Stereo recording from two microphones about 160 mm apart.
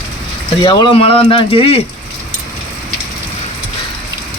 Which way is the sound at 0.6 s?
30° left (ahead or behind).